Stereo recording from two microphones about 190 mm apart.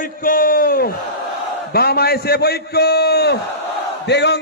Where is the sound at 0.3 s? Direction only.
50° left (ahead or behind).